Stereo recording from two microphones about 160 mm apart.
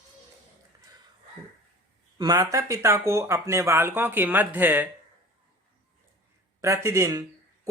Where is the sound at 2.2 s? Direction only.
20° right (ahead or behind).